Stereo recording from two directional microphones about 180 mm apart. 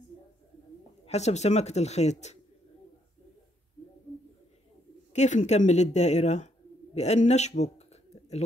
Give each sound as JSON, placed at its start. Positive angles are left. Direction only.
{"t": 1.0, "sound": "speech", "side_deg": 40}
{"t": 5.1, "sound": "speech", "side_deg": 40}